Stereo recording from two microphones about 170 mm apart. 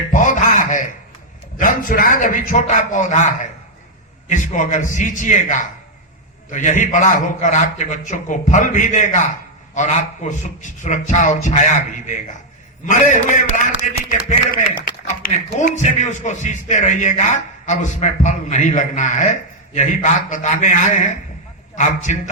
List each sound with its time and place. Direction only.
0.1 s music: 50° left (ahead or behind)
1.5 s a man's voice: 50° left (ahead or behind)